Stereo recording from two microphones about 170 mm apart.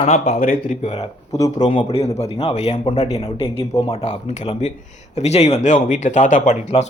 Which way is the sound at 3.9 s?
40° left (ahead or behind).